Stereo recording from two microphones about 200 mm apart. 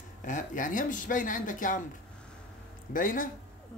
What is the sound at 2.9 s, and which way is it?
Speech, 45° left (ahead or behind).